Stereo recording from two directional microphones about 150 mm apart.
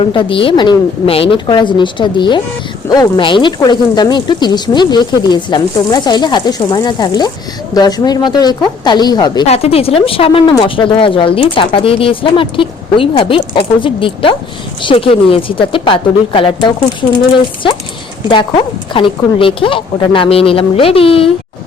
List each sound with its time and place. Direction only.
0.1 s speech: 35° left (ahead or behind)
9.5 s speech: 40° left (ahead or behind)
18.3 s speech: 35° left (ahead or behind)